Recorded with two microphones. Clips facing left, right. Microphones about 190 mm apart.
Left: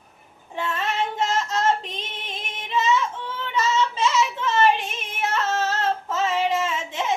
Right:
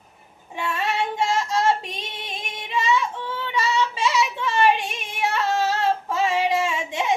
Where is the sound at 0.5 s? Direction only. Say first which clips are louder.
Even; 10° right (ahead or behind).